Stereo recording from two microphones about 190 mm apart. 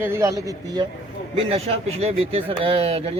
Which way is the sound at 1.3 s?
30° right (ahead or behind).